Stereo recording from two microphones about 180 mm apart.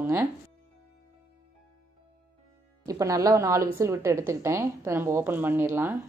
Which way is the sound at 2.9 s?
20° right (ahead or behind).